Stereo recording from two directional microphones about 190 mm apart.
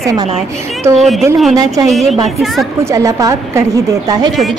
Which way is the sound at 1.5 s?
20° right (ahead or behind).